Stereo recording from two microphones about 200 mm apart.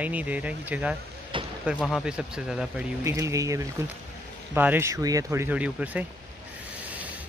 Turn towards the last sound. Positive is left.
turn(degrees=-5)  # may be behind; listen again after turning